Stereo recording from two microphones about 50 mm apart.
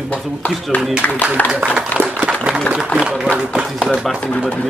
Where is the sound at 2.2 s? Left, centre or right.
Centre.